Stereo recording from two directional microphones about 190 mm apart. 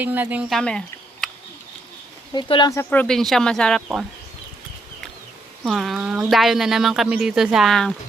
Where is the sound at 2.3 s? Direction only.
25° left (ahead or behind).